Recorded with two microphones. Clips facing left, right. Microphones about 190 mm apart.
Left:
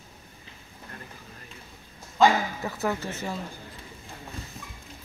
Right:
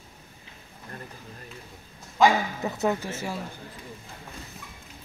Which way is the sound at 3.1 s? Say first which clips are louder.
Right 1 dB; 10° right (ahead or behind).